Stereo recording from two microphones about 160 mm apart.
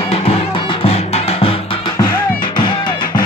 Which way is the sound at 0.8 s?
40° left (ahead or behind).